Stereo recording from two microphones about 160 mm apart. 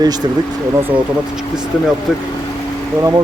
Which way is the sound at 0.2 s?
25° right (ahead or behind).